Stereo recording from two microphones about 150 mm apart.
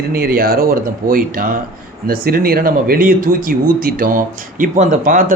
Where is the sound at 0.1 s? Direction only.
90° right.